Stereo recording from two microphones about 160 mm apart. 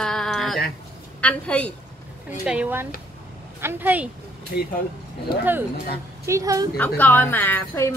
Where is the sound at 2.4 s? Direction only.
5° right (ahead or behind).